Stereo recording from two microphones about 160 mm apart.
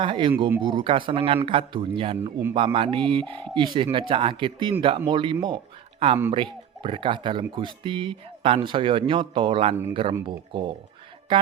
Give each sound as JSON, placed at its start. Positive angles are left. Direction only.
{"t": 0.0, "sound": "speech", "side_deg": -30}